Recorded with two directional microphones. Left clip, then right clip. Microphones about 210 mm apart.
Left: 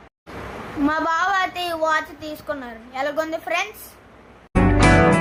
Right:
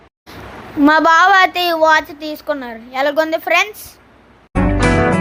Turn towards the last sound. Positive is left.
turn(degrees=0)  # may be behind; listen again after turning